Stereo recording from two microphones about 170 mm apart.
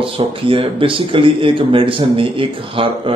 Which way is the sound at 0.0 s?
30° right (ahead or behind).